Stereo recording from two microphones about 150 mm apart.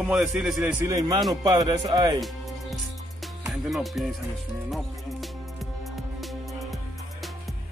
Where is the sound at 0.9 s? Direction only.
25° right (ahead or behind).